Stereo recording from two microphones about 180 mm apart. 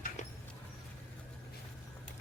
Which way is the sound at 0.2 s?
40° left (ahead or behind).